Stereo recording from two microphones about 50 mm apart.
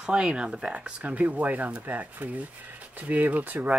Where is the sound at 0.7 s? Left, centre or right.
Right.